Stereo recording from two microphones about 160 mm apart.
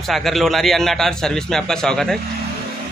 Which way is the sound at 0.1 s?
Centre (ahead or behind).